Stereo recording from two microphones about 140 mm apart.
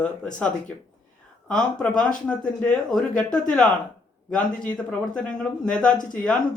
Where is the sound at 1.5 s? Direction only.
5° left (ahead or behind).